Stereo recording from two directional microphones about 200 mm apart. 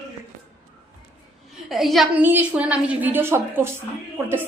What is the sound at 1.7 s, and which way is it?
A woman's voice, centre (ahead or behind).